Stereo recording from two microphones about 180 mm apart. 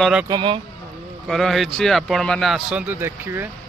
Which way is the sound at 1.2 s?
Centre (ahead or behind).